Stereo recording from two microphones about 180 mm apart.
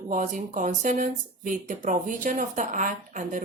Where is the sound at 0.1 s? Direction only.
45° right (ahead or behind).